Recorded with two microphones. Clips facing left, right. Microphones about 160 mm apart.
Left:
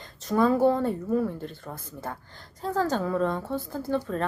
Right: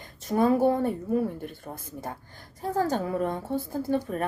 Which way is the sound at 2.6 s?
20° right (ahead or behind).